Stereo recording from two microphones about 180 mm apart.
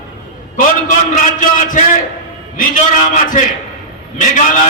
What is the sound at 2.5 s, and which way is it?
A man's voice, 45° left (ahead or behind).